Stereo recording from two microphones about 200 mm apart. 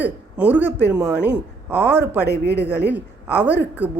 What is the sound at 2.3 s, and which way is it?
Speech, 55° right (ahead or behind).